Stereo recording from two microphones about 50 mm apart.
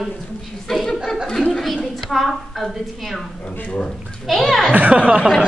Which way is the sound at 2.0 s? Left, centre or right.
Centre.